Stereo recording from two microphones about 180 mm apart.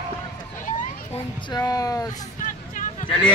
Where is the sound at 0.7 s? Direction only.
50° left (ahead or behind).